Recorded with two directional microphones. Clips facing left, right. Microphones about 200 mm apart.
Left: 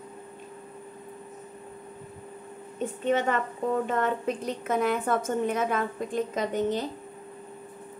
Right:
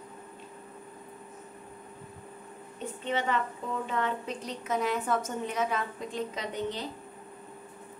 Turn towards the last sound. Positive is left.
turn(degrees=50)  # may be behind; listen again after turning